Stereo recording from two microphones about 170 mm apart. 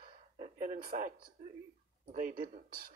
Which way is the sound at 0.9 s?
50° right (ahead or behind).